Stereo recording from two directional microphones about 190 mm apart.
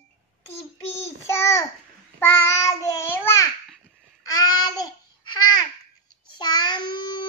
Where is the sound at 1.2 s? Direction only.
15° left (ahead or behind).